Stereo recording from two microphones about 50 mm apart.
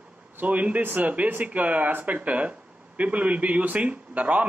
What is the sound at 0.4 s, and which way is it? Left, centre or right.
A man's voice, right.